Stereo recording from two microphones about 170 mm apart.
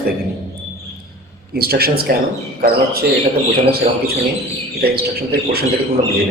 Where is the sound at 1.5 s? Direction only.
65° right (ahead or behind).